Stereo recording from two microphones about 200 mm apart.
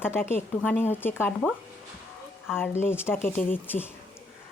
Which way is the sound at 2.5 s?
10° left (ahead or behind).